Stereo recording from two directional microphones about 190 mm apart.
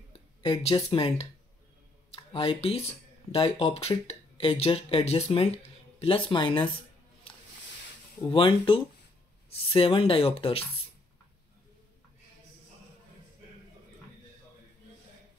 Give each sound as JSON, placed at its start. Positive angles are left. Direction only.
{"t": 0.4, "sound": "speech", "side_deg": 30}
{"t": 8.3, "sound": "speech", "side_deg": 25}